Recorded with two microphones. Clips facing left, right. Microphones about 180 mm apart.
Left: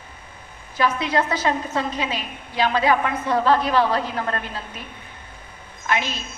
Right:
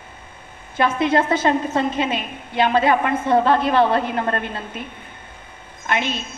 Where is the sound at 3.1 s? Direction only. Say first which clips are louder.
Right 5 dB; 25° right (ahead or behind).